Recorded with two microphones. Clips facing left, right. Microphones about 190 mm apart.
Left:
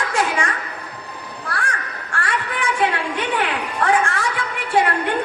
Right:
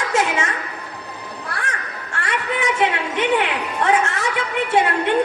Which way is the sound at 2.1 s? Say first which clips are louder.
Right 1 dB; 25° right (ahead or behind).